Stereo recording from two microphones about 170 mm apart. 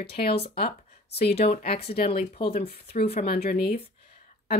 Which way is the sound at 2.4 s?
35° left (ahead or behind).